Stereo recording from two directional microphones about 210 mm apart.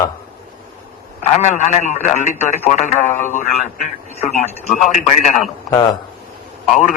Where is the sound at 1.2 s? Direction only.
35° left (ahead or behind).